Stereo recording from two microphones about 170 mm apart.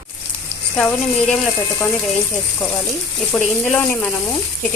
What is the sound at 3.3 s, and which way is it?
Speech, 15° left (ahead or behind).